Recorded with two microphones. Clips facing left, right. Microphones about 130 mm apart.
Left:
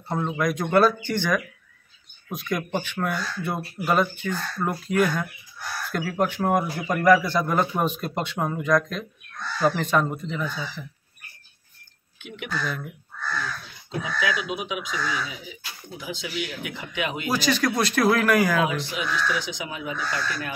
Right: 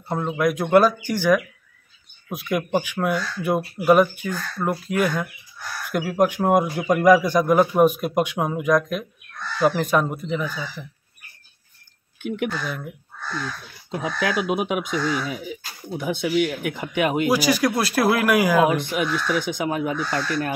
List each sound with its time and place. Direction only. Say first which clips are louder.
0.1 s a man's voice: right 3 dB; 10° right (ahead or behind)
12.2 s speech: right 12 dB; 50° right (ahead or behind)
12.5 s a man's voice: even; 5° right (ahead or behind)
13.8 s speech: right 2 dB; 50° right (ahead or behind)
17.3 s a man's voice: right 4 dB; 10° right (ahead or behind)
18.7 s speech: right 6 dB; 55° right (ahead or behind)